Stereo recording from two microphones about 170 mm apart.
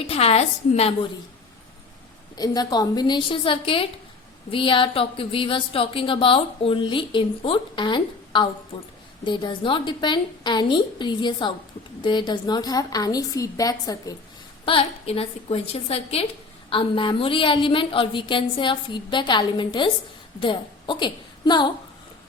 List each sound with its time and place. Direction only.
0.1 s a woman's voice: 35° left (ahead or behind)
2.3 s a woman's voice: 20° left (ahead or behind)
14.6 s a woman's voice: 30° left (ahead or behind)